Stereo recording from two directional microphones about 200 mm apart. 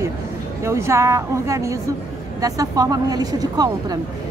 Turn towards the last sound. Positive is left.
turn(degrees=-20)  # may be behind; listen again after turning